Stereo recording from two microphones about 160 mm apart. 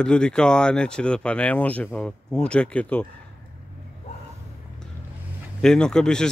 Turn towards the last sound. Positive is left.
turn(degrees=5)  # may be behind; listen again after turning